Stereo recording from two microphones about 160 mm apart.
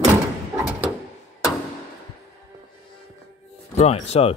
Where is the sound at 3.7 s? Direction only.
40° left (ahead or behind).